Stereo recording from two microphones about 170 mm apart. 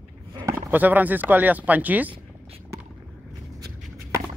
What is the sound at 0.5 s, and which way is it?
Speech, 10° right (ahead or behind).